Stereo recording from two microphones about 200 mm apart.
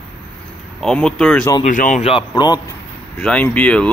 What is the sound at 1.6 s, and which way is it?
Speech, 40° left (ahead or behind).